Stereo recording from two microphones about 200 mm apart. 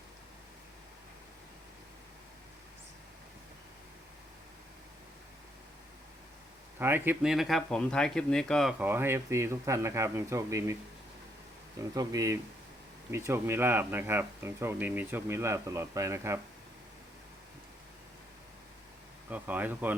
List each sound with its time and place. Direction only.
6.7 s speech: 10° right (ahead or behind)
8.8 s speech: 10° right (ahead or behind)
11.8 s speech: 15° right (ahead or behind)
19.3 s speech: 10° right (ahead or behind)